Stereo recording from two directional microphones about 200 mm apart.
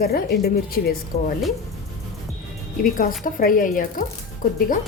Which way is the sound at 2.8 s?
45° left (ahead or behind).